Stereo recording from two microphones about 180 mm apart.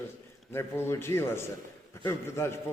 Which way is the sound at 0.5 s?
15° left (ahead or behind).